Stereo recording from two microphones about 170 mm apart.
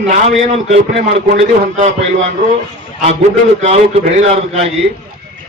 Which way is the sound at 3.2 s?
40° right (ahead or behind).